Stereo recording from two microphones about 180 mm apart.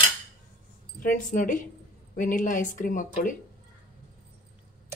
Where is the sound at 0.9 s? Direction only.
45° left (ahead or behind).